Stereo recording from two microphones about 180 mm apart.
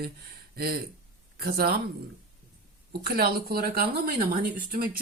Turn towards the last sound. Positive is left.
turn(degrees=-55)  # may be behind; listen again after turning